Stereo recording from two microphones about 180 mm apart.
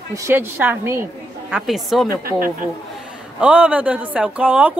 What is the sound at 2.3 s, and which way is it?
Speech, 50° right (ahead or behind).